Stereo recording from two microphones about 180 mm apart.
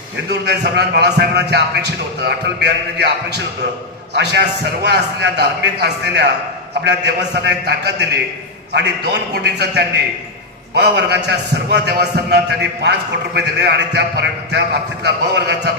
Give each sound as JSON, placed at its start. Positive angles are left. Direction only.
{"t": 0.3, "sound": "a man's voice", "side_deg": -70}
{"t": 4.1, "sound": "a man's voice", "side_deg": -70}